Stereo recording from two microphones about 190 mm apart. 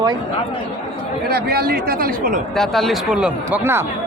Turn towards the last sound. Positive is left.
turn(degrees=-10)  # may be behind; listen again after turning